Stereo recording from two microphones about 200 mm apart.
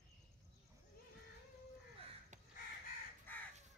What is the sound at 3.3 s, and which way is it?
Crow, 10° left (ahead or behind).